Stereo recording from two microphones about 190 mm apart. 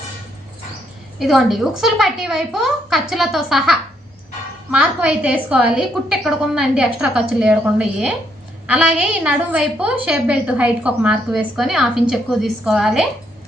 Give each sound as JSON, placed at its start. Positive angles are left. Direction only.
{"t": 1.2, "sound": "a woman's voice", "side_deg": 0}